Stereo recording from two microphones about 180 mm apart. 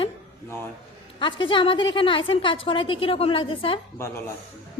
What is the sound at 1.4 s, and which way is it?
A woman's voice, 30° left (ahead or behind).